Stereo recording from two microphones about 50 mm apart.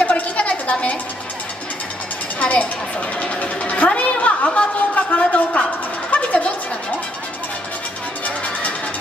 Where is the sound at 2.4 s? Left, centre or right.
Left.